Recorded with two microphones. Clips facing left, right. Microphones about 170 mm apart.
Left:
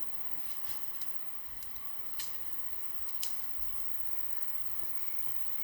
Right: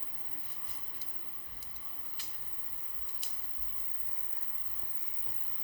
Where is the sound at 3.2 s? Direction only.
90° left.